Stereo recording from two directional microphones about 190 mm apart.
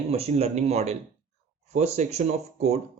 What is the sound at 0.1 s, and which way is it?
Speech, 30° right (ahead or behind).